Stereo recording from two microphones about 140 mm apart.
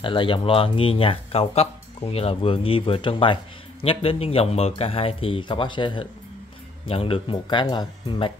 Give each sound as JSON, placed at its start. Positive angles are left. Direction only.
{"t": 0.0, "sound": "speech", "side_deg": 35}